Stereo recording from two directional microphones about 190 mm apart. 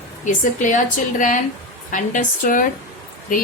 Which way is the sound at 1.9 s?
45° left (ahead or behind).